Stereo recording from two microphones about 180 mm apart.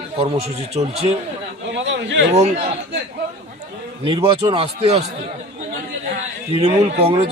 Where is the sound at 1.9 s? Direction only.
85° right.